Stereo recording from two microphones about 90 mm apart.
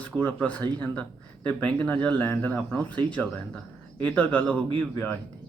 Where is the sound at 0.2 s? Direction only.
15° left (ahead or behind).